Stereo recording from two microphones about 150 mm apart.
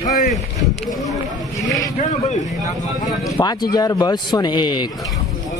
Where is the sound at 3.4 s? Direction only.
30° left (ahead or behind).